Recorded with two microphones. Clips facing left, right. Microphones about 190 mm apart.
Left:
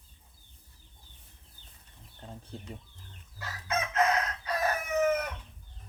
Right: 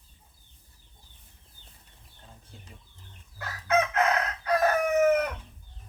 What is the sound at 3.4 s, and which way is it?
Chicken, 60° right (ahead or behind).